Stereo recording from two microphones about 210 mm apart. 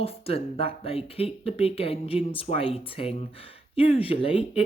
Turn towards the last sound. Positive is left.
turn(degrees=25)  # may be behind; listen again after turning